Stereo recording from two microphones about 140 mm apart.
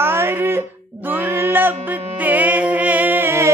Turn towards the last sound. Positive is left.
turn(degrees=-15)  # may be behind; listen again after turning